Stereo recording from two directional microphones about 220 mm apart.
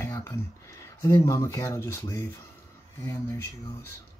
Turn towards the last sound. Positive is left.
turn(degrees=15)  # may be behind; listen again after turning